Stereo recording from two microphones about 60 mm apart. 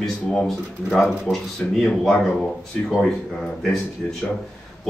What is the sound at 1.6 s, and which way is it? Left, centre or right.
Speech, centre.